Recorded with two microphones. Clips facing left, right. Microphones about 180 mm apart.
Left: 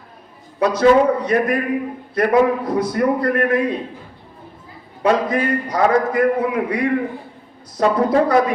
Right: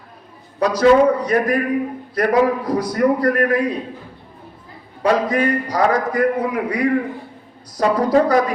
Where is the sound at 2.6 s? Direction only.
25° left (ahead or behind).